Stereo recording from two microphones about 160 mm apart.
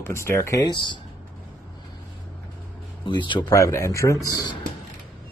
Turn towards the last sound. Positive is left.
turn(degrees=25)  # may be behind; listen again after turning